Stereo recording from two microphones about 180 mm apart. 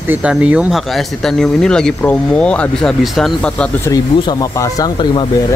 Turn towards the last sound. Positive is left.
turn(degrees=20)  # may be behind; listen again after turning